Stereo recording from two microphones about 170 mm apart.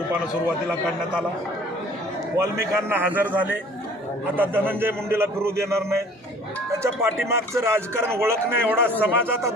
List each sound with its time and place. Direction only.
2.4 s speech: 15° right (ahead or behind)